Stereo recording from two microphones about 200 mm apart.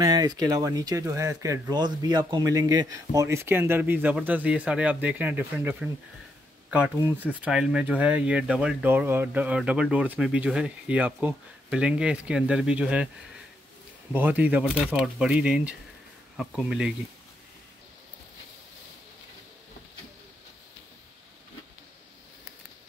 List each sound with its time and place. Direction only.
0.0 s speech: 20° right (ahead or behind)
14.1 s speech: 10° right (ahead or behind)